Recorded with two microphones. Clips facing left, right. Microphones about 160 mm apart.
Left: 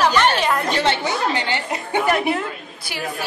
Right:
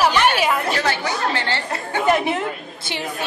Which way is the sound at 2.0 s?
20° right (ahead or behind).